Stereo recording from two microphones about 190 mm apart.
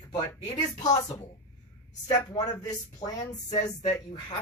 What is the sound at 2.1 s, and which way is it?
Speech, 20° left (ahead or behind).